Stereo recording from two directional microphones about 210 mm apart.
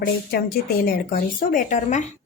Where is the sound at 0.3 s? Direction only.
45° left (ahead or behind).